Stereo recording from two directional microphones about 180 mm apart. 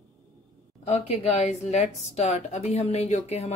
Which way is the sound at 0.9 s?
35° left (ahead or behind).